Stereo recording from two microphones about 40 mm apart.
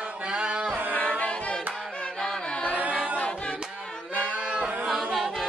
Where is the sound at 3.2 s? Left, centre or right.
Left.